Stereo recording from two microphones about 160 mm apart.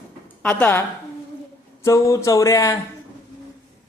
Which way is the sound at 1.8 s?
20° left (ahead or behind).